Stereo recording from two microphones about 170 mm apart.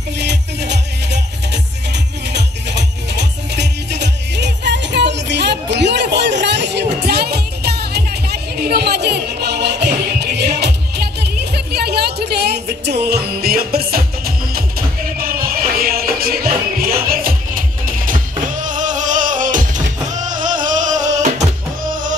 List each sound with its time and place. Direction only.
0.2 s music: 85° right; by 21.5 s 45° right (ahead or behind)